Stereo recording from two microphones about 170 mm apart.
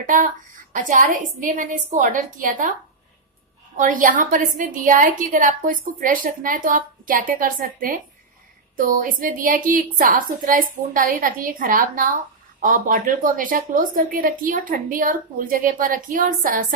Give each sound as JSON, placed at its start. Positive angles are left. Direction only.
{"t": 0.0, "sound": "a woman's voice", "side_deg": -50}
{"t": 3.7, "sound": "a woman's voice", "side_deg": -50}